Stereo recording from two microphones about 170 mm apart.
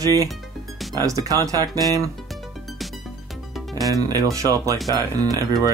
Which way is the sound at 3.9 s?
20° right (ahead or behind).